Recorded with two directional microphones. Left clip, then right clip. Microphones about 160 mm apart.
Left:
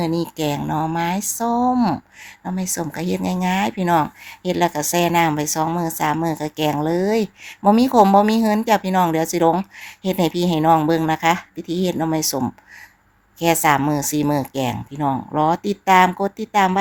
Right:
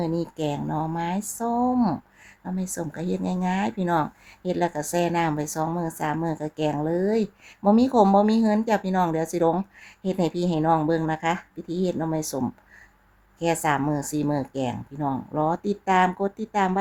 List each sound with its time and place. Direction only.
0.0 s speech: 15° left (ahead or behind)